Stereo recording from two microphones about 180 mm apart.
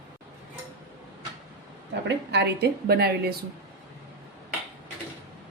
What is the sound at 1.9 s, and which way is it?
A woman's voice, 75° right (ahead or behind).